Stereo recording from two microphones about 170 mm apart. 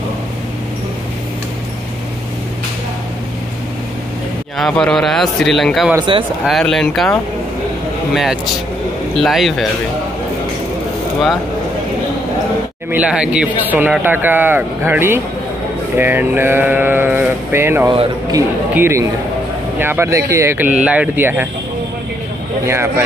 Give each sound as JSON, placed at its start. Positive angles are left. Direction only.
{"t": 4.6, "sound": "speech", "side_deg": 5}
{"t": 5.9, "sound": "speech", "side_deg": -30}
{"t": 6.4, "sound": "speech", "side_deg": 0}
{"t": 12.9, "sound": "speech", "side_deg": -5}
{"t": 22.7, "sound": "speech", "side_deg": -15}